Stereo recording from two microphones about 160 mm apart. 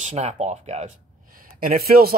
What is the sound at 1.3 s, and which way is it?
Speech, 60° right (ahead or behind).